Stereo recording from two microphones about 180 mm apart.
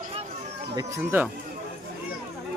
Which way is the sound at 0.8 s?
15° right (ahead or behind).